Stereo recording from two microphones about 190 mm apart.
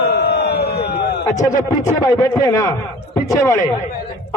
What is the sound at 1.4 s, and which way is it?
A man's voice, 15° left (ahead or behind).